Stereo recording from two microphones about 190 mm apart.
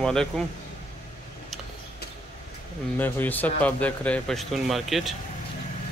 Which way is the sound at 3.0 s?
10° left (ahead or behind).